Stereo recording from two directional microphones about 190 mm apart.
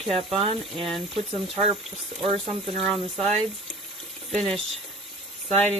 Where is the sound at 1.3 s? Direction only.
30° right (ahead or behind).